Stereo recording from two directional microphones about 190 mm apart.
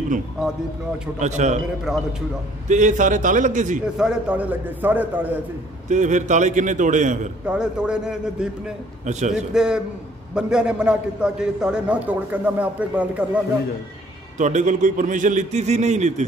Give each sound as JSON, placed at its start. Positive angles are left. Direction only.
{"t": 0.4, "sound": "a man's voice", "side_deg": 0}
{"t": 1.2, "sound": "a man's voice", "side_deg": -40}
{"t": 1.9, "sound": "a man's voice", "side_deg": 0}
{"t": 2.7, "sound": "a man's voice", "side_deg": -40}
{"t": 3.8, "sound": "a man's voice", "side_deg": -5}
{"t": 5.9, "sound": "a man's voice", "side_deg": -40}
{"t": 7.4, "sound": "a man's voice", "side_deg": -5}
{"t": 9.0, "sound": "a man's voice", "side_deg": -40}
{"t": 9.5, "sound": "a man's voice", "side_deg": -5}
{"t": 14.4, "sound": "a man's voice", "side_deg": -40}